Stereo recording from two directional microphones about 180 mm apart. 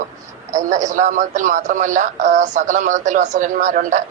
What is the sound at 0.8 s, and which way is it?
Speech, 45° right (ahead or behind).